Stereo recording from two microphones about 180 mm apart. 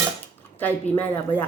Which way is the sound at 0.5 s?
10° left (ahead or behind).